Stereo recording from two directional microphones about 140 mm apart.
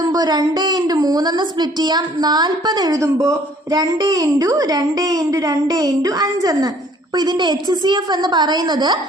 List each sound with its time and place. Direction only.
0.1 s a woman's voice: 30° right (ahead or behind)